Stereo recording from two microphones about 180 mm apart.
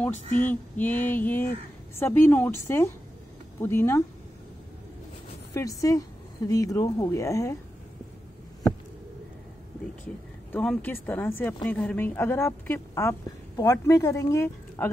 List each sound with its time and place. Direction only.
0.5 s speech: 10° left (ahead or behind)
5.5 s a woman's voice: 15° left (ahead or behind)
10.0 s speech: 5° left (ahead or behind)